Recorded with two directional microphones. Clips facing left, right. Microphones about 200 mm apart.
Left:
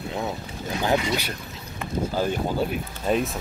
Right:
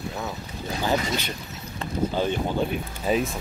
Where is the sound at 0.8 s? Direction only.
10° left (ahead or behind).